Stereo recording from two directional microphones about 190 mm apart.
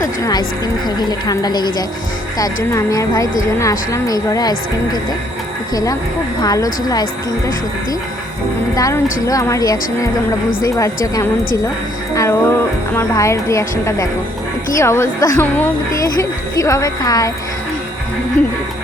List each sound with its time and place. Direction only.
0.0 s a woman's voice: 20° left (ahead or behind)
2.7 s a woman's voice: 15° left (ahead or behind)
8.7 s speech: 15° left (ahead or behind)